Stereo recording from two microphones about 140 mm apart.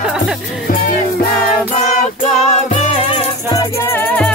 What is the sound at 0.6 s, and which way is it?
Music, 90° left.